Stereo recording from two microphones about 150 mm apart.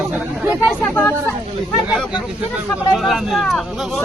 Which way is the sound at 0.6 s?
Centre (ahead or behind).